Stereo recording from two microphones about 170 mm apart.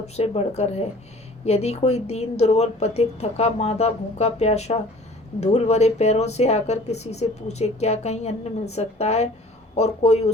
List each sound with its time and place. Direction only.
0.0 s a woman's voice: 40° left (ahead or behind)